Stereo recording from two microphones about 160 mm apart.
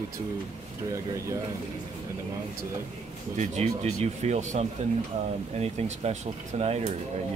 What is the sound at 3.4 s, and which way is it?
Speech, 45° right (ahead or behind).